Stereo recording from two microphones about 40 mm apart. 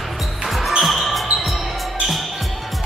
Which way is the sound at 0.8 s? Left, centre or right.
Centre.